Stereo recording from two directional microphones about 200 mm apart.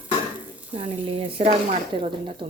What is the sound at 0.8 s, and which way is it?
Speech, 25° right (ahead or behind).